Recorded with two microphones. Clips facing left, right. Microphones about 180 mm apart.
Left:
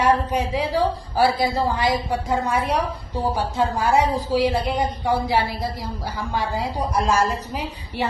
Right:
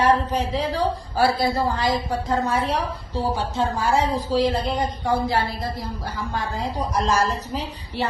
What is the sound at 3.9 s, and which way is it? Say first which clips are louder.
A woman's voice: left 2 dB; 10° left (ahead or behind).